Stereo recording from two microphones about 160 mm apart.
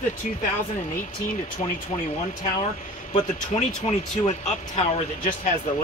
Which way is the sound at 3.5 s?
40° left (ahead or behind).